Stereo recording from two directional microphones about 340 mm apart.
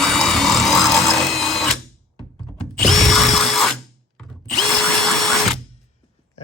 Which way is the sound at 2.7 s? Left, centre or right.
Centre.